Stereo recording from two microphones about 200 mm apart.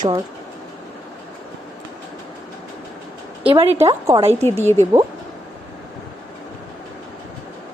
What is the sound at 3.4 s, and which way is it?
Speech, 25° right (ahead or behind).